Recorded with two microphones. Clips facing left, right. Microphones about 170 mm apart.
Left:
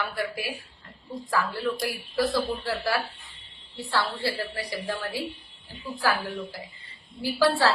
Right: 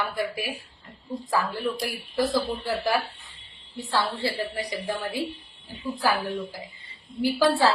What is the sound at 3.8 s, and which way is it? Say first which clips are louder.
A woman's voice: right 1 dB; 20° right (ahead or behind).